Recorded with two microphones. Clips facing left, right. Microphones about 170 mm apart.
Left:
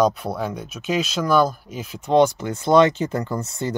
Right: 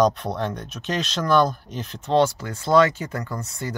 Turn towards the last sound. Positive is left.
turn(degrees=25)  # may be behind; listen again after turning